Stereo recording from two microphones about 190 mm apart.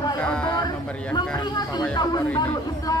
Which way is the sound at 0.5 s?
20° left (ahead or behind).